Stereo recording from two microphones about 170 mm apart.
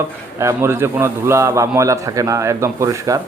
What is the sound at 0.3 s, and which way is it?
A man's voice, 15° right (ahead or behind).